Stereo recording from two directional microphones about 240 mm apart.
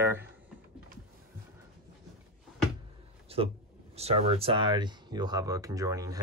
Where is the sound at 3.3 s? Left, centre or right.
Right.